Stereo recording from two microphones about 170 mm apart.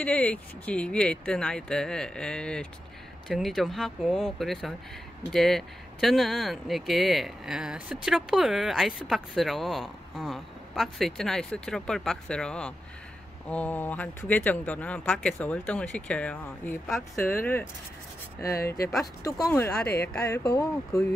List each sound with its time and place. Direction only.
0.0 s speech: 10° left (ahead or behind)
18.4 s speech: 65° left (ahead or behind)
19.2 s speech: 15° left (ahead or behind)